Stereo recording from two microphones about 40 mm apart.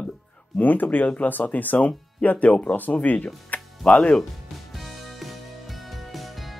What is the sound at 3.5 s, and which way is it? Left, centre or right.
Music, left.